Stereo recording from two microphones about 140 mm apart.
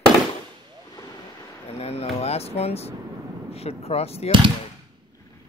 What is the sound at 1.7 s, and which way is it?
Speech, 45° left (ahead or behind).